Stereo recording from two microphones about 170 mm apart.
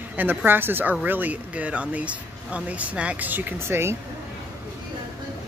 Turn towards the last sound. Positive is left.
turn(degrees=-15)  # may be behind; listen again after turning